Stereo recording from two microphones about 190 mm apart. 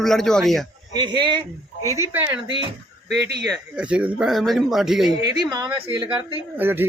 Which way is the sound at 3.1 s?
60° right (ahead or behind).